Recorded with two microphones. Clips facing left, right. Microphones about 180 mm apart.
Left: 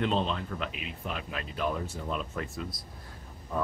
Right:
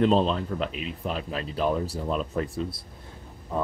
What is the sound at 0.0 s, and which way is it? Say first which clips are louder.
Speech: right 7 dB; 35° right (ahead or behind).